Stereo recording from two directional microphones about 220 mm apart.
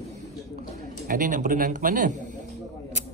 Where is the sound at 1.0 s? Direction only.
40° right (ahead or behind).